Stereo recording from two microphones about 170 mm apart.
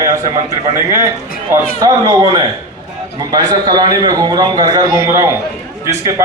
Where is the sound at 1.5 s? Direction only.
20° right (ahead or behind).